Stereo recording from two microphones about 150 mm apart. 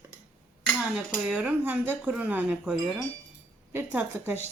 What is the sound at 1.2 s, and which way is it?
Speech, 10° right (ahead or behind).